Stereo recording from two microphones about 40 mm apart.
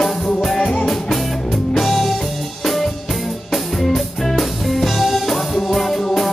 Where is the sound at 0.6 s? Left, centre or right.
Left.